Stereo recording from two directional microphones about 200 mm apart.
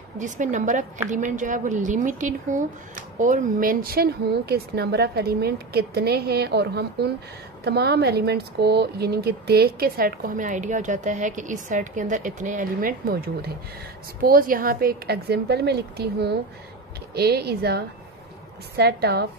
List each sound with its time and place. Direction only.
0.2 s a woman's voice: 40° right (ahead or behind)